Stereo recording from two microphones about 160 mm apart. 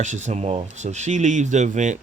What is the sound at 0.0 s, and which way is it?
Speech, 50° right (ahead or behind).